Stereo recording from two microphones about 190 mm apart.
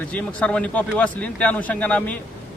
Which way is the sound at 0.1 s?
10° left (ahead or behind).